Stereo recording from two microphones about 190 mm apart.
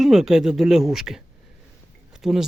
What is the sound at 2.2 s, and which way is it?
Speech, centre (ahead or behind).